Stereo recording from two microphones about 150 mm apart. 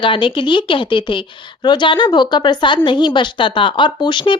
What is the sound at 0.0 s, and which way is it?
A woman's voice, 35° left (ahead or behind).